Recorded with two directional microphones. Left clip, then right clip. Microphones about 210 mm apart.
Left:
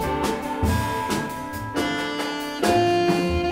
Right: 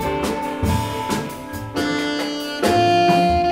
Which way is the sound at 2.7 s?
35° left (ahead or behind).